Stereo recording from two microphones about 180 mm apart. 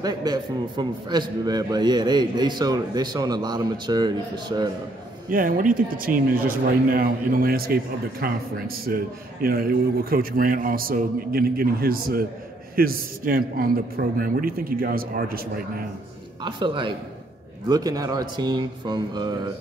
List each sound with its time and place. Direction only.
0.0 s a man's voice: 20° right (ahead or behind)
5.3 s a man's voice: 50° right (ahead or behind)
16.4 s a man's voice: 25° right (ahead or behind)